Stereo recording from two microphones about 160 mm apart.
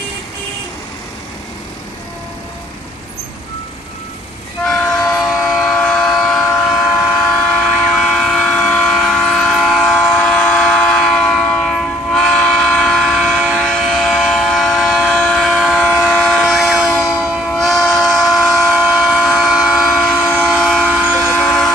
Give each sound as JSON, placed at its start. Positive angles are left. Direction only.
{"t": 4.6, "sound": "train", "side_deg": 5}